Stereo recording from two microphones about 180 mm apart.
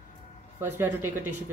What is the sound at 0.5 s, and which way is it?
Speech, 10° right (ahead or behind).